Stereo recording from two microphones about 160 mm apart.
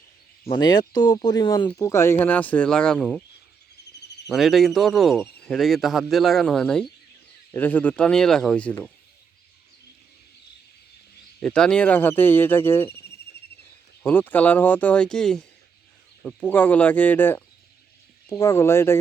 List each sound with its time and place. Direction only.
0.4 s speech: 30° left (ahead or behind); by 3.2 s 10° left (ahead or behind)
4.3 s speech: centre (ahead or behind)
11.3 s speech: 5° left (ahead or behind)
13.3 s bird: 90° left
14.0 s speech: 10° left (ahead or behind)